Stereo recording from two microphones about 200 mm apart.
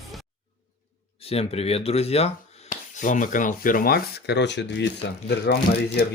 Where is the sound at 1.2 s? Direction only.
30° left (ahead or behind).